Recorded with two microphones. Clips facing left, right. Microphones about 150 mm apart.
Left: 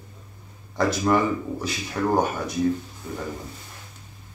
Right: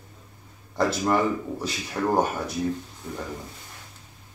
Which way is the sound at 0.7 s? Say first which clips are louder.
Left 2 dB; centre (ahead or behind).